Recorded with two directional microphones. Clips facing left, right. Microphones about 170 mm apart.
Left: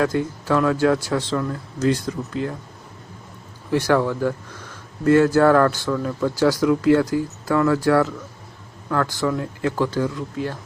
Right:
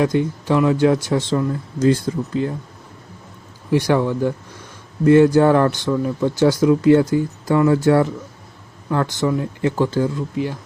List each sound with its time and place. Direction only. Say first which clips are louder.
0.0 s speech: right 3 dB; 20° right (ahead or behind)
3.7 s speech: right 2 dB; 15° right (ahead or behind)